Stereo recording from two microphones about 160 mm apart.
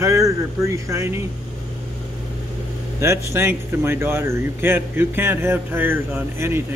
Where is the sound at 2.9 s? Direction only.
15° right (ahead or behind).